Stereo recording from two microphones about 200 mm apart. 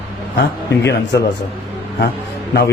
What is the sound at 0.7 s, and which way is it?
Speech, 60° left (ahead or behind).